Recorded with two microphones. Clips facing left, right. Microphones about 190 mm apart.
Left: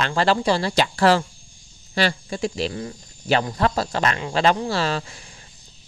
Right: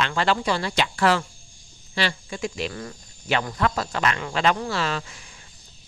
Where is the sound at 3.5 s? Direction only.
35° left (ahead or behind).